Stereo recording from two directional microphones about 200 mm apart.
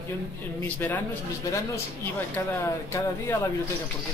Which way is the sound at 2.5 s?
10° left (ahead or behind).